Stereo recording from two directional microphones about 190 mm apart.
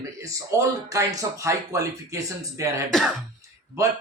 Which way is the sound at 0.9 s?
15° right (ahead or behind).